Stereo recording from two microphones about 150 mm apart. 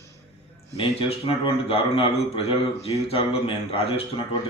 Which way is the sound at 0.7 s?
40° left (ahead or behind).